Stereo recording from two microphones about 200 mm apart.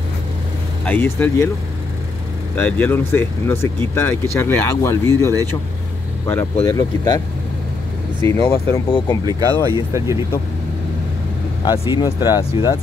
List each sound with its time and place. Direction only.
0.8 s speech: 10° left (ahead or behind)
2.5 s speech: 10° left (ahead or behind)
8.2 s speech: 10° left (ahead or behind)
9.2 s speech: 20° right (ahead or behind)
11.6 s speech: 20° left (ahead or behind)